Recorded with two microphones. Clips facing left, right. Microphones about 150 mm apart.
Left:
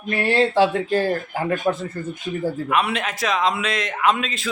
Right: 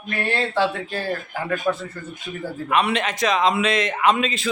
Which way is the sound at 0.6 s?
40° left (ahead or behind).